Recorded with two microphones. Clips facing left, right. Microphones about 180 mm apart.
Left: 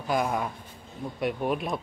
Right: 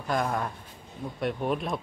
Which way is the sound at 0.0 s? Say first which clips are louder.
Left 1 dB; 5° left (ahead or behind).